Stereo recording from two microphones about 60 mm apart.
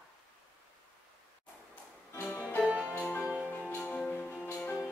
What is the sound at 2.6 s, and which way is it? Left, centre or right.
Music, right.